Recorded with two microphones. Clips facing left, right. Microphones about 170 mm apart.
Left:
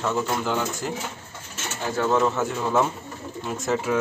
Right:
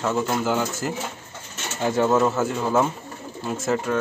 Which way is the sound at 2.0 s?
10° right (ahead or behind).